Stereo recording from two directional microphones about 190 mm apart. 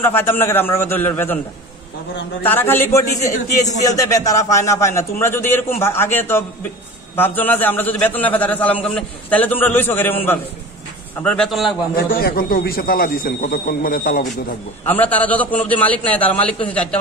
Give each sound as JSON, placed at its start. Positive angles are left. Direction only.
{"t": 0.0, "sound": "a man's voice", "side_deg": 10}
{"t": 2.4, "sound": "a man's voice", "side_deg": 10}
{"t": 11.9, "sound": "a man's voice", "side_deg": 50}
{"t": 14.9, "sound": "a man's voice", "side_deg": 10}